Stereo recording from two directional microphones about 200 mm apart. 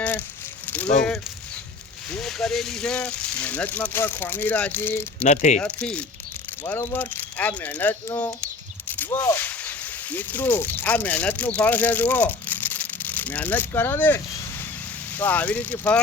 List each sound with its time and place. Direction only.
0.0 s a sound: 5° left (ahead or behind)
0.7 s speech: 5° left (ahead or behind)
5.2 s speech: 35° left (ahead or behind)
5.5 s speech: 5° left (ahead or behind)